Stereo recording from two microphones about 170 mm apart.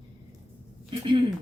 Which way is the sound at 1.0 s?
30° right (ahead or behind).